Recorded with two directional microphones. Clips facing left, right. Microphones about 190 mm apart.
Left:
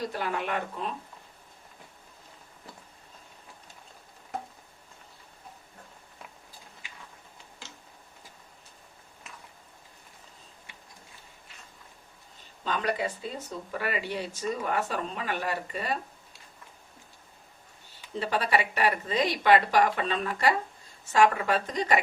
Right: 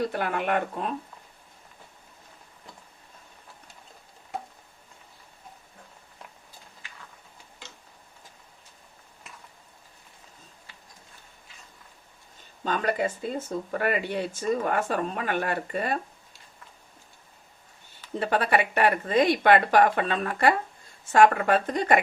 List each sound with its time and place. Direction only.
0.1 s speech: 55° right (ahead or behind)
12.6 s speech: 50° right (ahead or behind)
18.2 s speech: 55° right (ahead or behind)